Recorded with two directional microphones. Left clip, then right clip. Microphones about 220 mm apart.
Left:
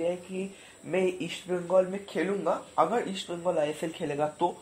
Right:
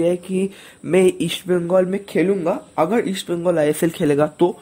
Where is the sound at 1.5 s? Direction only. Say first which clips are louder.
Right 8 dB; 45° right (ahead or behind).